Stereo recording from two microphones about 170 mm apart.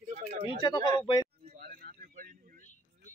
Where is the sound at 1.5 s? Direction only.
60° right (ahead or behind).